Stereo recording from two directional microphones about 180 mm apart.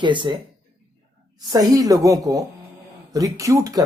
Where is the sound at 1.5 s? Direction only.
20° right (ahead or behind).